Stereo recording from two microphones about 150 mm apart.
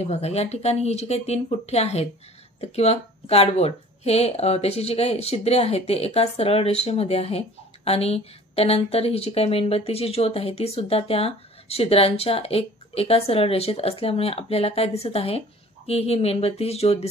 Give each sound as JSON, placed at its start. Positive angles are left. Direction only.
{"t": 0.0, "sound": "speech", "side_deg": 45}